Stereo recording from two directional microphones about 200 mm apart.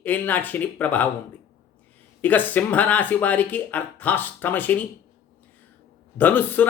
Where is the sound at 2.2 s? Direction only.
10° left (ahead or behind).